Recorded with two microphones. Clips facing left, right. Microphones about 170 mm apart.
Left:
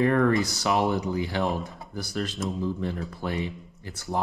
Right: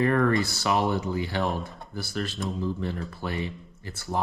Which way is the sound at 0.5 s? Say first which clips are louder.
Left 1 dB; 20° left (ahead or behind).